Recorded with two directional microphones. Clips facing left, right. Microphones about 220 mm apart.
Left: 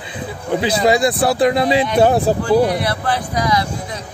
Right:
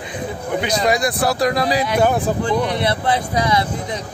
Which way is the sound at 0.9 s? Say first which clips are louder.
Left 4 dB; 30° left (ahead or behind).